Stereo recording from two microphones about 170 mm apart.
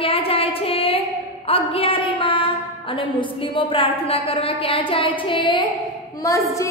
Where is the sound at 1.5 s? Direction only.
35° left (ahead or behind).